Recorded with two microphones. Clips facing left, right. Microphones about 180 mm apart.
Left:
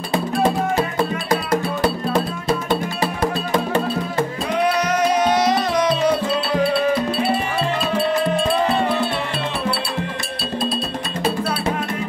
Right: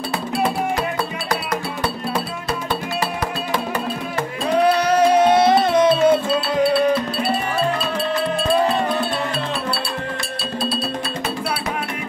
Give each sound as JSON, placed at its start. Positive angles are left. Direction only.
{"t": 4.7, "sound": "music", "side_deg": -30}